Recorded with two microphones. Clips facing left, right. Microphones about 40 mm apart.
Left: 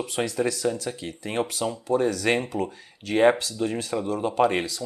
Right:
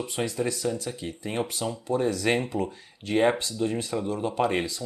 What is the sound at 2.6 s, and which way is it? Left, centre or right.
Speech, centre.